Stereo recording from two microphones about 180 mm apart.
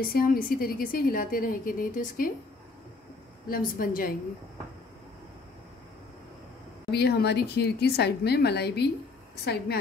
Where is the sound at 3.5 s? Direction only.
50° left (ahead or behind).